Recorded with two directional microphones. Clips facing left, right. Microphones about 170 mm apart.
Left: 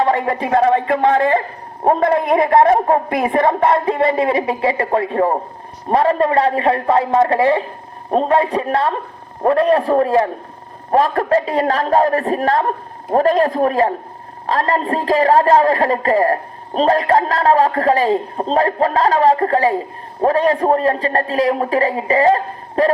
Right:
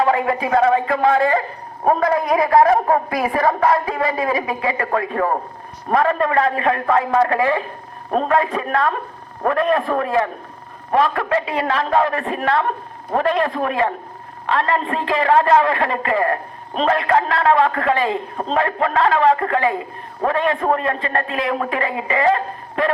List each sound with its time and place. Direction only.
0.0 s a sound: 40° left (ahead or behind)
0.4 s a woman's voice: 30° left (ahead or behind)
1.8 s a woman's voice: 25° left (ahead or behind)